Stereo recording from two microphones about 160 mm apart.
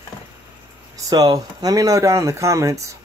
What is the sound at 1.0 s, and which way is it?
Speech, 25° right (ahead or behind).